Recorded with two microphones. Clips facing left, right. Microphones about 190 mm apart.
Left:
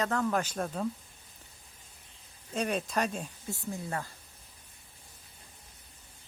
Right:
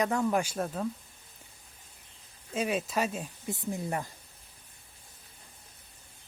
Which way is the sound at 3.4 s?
15° right (ahead or behind).